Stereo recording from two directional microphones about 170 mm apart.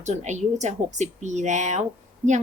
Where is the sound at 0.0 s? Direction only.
40° right (ahead or behind).